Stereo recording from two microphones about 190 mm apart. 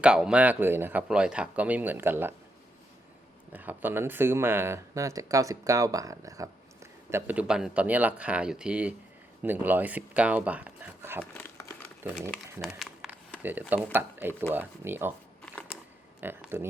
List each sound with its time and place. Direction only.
0.0 s speech: 5° right (ahead or behind)
3.5 s speech: 10° right (ahead or behind)
11.2 s crumpling: 10° left (ahead or behind)
12.0 s speech: 10° right (ahead or behind)
12.6 s a sound: centre (ahead or behind)
13.9 s speech: 10° right (ahead or behind)
16.2 s speech: 10° right (ahead or behind)